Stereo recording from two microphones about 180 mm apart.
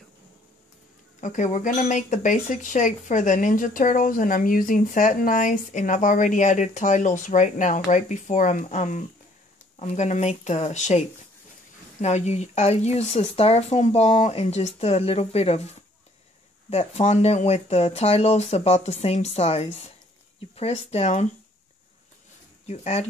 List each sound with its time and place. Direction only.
1.2 s speech: 45° left (ahead or behind)
22.7 s speech: 35° left (ahead or behind)